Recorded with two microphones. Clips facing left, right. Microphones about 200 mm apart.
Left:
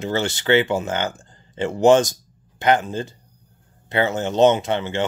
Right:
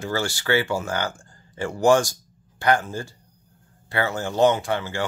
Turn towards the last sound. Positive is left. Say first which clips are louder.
# left 3 dB
turn(degrees=20)  # may be behind; listen again after turning